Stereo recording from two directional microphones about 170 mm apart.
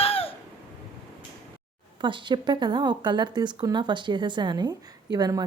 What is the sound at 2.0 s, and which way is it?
Speech, 30° right (ahead or behind).